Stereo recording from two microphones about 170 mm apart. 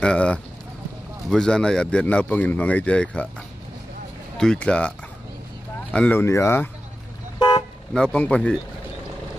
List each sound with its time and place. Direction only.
0.0 s speech: 5° left (ahead or behind)
4.4 s speech: 5° left (ahead or behind)
5.9 s speech: 10° left (ahead or behind)
7.3 s toot: 25° left (ahead or behind)
7.9 s speech: 5° left (ahead or behind)